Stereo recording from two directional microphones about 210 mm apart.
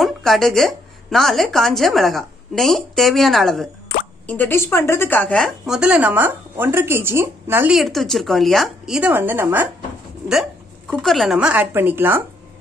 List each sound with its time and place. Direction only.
0.0 s speech: centre (ahead or behind)
10.9 s speech: centre (ahead or behind)